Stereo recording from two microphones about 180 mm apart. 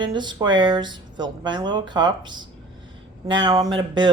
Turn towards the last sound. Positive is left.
turn(degrees=-25)  # may be behind; listen again after turning